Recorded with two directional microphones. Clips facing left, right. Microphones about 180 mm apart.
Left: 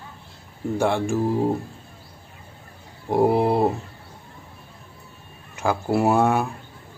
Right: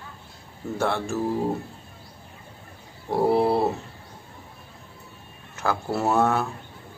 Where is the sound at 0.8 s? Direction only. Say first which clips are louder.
Left 4 dB; 15° left (ahead or behind).